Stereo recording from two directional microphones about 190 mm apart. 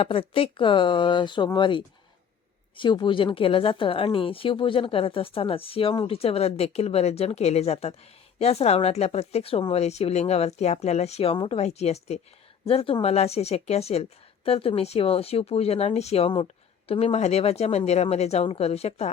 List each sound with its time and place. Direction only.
0.0 s speech: 30° left (ahead or behind)